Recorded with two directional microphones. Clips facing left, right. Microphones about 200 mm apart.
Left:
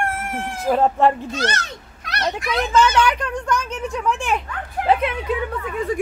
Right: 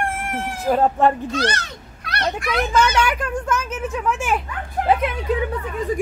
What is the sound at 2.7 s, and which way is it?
A man's voice, 10° right (ahead or behind).